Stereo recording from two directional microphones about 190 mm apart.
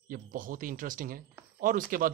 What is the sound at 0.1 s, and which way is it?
Speech, 45° right (ahead or behind).